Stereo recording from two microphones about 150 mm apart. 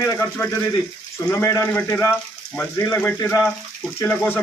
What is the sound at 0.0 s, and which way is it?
Speech, 20° left (ahead or behind).